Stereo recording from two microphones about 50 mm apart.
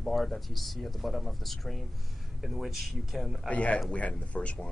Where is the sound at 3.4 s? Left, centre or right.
Left.